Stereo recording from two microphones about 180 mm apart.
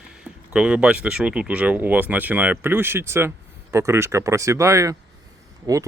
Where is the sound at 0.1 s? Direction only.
5° right (ahead or behind).